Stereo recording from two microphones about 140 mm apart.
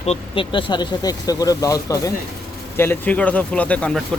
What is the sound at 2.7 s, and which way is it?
Speech, 15° left (ahead or behind).